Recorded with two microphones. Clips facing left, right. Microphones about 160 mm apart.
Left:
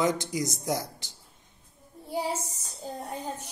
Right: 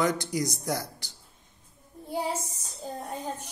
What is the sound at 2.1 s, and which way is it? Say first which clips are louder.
A child's voice: even; 10° left (ahead or behind).